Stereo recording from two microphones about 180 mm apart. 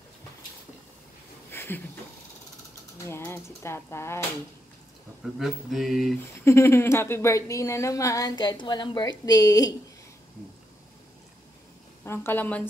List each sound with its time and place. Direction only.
1.5 s a sound: 10° left (ahead or behind)
3.1 s a woman's voice: 15° left (ahead or behind)
5.4 s mantra: centre (ahead or behind)
6.4 s a woman's voice: 15° left (ahead or behind)
12.0 s a woman's voice: 10° left (ahead or behind)